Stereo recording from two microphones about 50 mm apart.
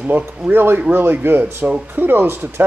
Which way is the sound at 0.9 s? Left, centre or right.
Right.